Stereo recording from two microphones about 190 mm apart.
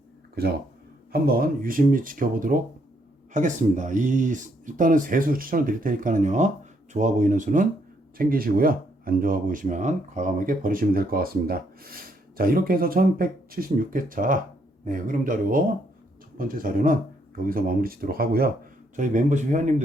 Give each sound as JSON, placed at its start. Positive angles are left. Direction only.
{"t": 0.4, "sound": "speech", "side_deg": -55}
{"t": 18.9, "sound": "speech", "side_deg": -40}